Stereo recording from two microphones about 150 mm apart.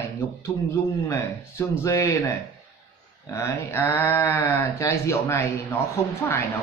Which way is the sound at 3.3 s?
20° left (ahead or behind).